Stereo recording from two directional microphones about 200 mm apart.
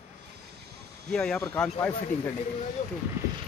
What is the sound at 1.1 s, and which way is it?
Speech, 5° left (ahead or behind).